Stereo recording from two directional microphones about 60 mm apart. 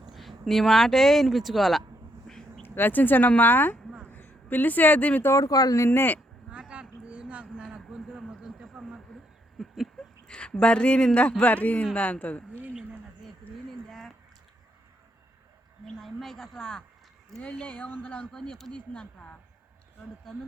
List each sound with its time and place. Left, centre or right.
0.1 s speech: centre
2.6 s speech: left
4.0 s a sound: left
5.4 s speech: left
5.8 s speech: left
6.5 s a sound: centre
10.2 s speech: centre
13.7 s a sound: centre
16.0 s a sound: centre
17.4 s speech: left
18.3 s speech: centre
18.7 s speech: centre